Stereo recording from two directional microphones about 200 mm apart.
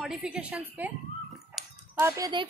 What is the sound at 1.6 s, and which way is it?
Dog, centre (ahead or behind).